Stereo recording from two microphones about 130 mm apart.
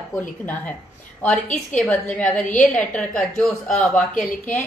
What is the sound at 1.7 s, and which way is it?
A woman's voice, 10° left (ahead or behind).